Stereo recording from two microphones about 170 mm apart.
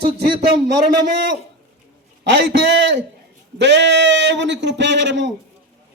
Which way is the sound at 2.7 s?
90° right.